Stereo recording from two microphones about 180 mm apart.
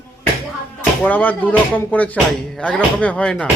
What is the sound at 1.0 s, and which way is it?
Speech, 10° left (ahead or behind).